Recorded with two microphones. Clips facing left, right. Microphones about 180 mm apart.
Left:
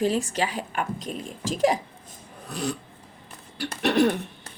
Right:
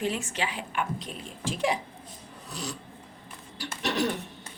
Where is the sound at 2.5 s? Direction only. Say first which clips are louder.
Left 8 dB; 55° left (ahead or behind).